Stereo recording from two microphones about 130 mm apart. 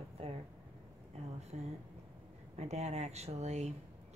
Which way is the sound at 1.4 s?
60° right (ahead or behind).